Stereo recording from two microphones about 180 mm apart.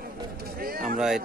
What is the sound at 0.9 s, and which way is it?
Speech, 5° right (ahead or behind).